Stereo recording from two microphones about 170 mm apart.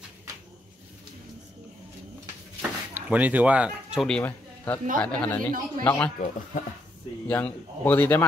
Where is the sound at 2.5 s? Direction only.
10° right (ahead or behind); by 6.1 s 10° left (ahead or behind).